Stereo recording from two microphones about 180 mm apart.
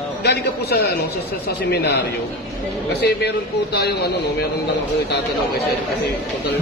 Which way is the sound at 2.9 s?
65° left (ahead or behind).